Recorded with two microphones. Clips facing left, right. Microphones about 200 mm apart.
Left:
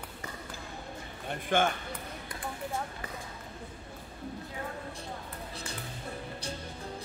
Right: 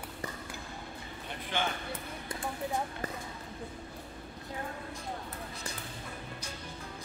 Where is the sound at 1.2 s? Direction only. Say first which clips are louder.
Left 8 dB; 50° left (ahead or behind).